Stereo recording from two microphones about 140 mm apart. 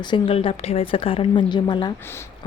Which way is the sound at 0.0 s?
35° left (ahead or behind).